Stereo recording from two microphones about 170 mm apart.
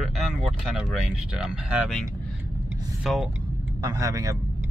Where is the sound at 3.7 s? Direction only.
20° right (ahead or behind).